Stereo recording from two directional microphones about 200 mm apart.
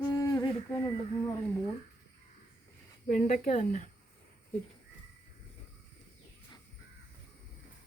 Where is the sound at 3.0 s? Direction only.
45° left (ahead or behind).